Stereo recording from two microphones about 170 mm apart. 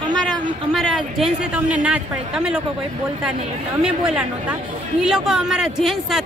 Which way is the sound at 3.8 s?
5° right (ahead or behind).